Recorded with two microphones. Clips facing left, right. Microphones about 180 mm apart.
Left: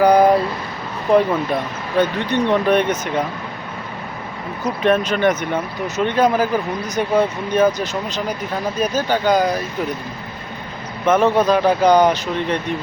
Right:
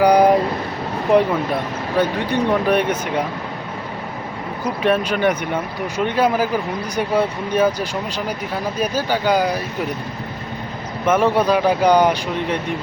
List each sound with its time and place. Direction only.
0.0 s vehicle: 15° right (ahead or behind)
2.0 s speech: 10° right (ahead or behind)
4.8 s speech: 10° right (ahead or behind)
11.0 s speech: 10° right (ahead or behind)